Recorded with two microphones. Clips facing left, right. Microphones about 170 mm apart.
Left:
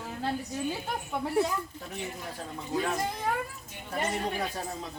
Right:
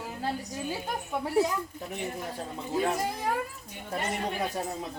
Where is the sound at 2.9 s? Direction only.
10° right (ahead or behind).